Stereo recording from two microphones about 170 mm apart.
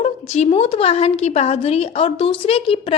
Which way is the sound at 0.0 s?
40° left (ahead or behind).